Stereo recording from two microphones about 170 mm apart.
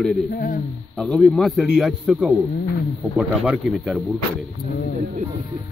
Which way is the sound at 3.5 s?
Centre (ahead or behind).